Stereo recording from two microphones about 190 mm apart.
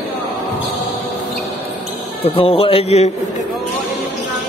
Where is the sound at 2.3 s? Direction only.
30° left (ahead or behind).